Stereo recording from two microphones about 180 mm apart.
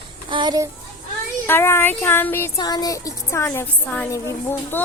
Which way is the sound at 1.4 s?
15° left (ahead or behind).